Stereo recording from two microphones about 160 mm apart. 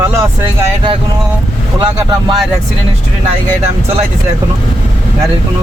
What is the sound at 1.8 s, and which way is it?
Speech, 30° right (ahead or behind).